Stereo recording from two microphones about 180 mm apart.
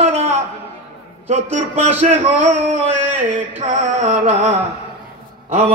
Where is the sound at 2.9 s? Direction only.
45° right (ahead or behind).